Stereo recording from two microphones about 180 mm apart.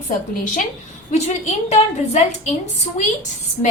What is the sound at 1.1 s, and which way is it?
A woman's voice, 40° left (ahead or behind).